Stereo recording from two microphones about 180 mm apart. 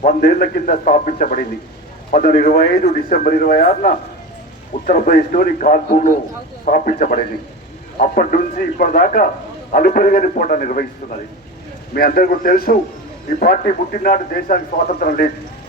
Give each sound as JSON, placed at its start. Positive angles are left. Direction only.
{"t": 0.0, "sound": "a man's voice", "side_deg": 50}
{"t": 11.9, "sound": "a man's voice", "side_deg": 55}